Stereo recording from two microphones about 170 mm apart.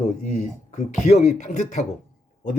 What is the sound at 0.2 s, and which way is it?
Speech, 45° left (ahead or behind).